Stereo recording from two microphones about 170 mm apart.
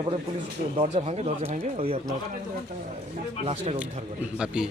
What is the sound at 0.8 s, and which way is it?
A man's voice, 35° right (ahead or behind).